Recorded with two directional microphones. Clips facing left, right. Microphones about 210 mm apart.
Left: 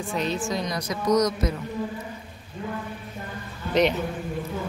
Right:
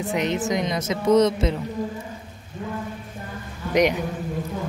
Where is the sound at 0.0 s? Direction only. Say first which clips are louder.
Right 3 dB; 20° right (ahead or behind).